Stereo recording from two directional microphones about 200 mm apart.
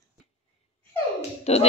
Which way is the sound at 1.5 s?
30° left (ahead or behind).